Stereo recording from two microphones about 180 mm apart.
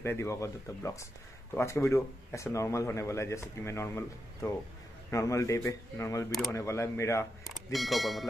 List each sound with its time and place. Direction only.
0.0 s a man's voice: 15° left (ahead or behind)
7.4 s speech: centre (ahead or behind)